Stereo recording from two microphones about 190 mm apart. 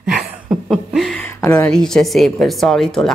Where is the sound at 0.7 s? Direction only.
Centre (ahead or behind).